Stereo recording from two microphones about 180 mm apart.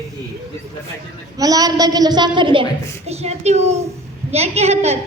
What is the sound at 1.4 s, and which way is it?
A woman's voice, 20° right (ahead or behind).